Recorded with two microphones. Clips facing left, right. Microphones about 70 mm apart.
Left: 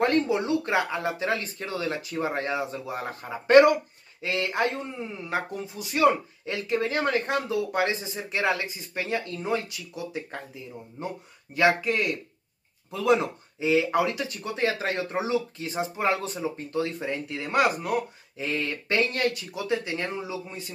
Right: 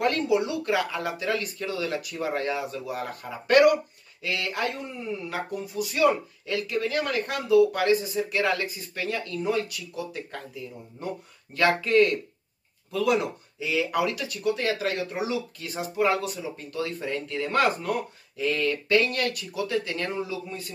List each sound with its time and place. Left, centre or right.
0.0 s speech: left